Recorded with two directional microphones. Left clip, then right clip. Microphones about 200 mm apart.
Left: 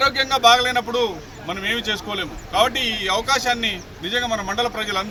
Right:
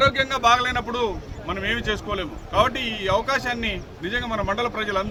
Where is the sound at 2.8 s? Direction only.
10° right (ahead or behind).